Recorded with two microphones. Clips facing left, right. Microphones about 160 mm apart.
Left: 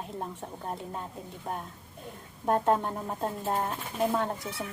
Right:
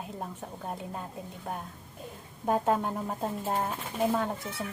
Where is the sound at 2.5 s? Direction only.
5° right (ahead or behind).